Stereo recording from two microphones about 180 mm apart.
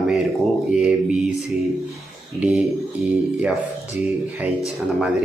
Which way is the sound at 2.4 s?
5° right (ahead or behind).